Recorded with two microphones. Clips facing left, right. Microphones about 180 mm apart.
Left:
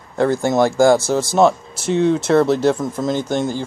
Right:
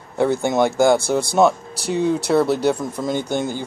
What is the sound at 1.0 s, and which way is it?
Speech, 60° right (ahead or behind).